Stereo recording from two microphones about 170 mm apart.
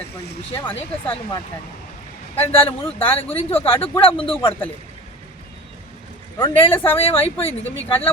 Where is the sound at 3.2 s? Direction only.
35° left (ahead or behind).